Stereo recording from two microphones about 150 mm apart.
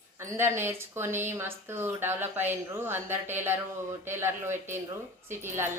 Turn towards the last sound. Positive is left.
turn(degrees=-15)  # may be behind; listen again after turning